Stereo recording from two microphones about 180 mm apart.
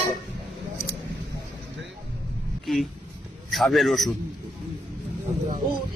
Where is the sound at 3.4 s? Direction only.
Centre (ahead or behind).